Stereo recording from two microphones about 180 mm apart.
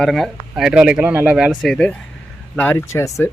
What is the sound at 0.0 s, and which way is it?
A man's voice, centre (ahead or behind).